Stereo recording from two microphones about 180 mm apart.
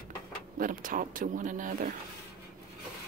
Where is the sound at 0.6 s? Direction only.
50° right (ahead or behind).